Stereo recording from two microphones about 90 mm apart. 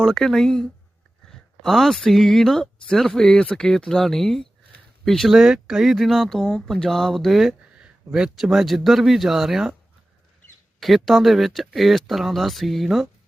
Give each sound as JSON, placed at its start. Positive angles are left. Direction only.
{"t": 0.0, "sound": "speech", "side_deg": 5}
{"t": 10.8, "sound": "speech", "side_deg": 0}